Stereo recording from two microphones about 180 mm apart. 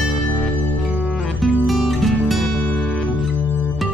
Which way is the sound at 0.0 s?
5° right (ahead or behind).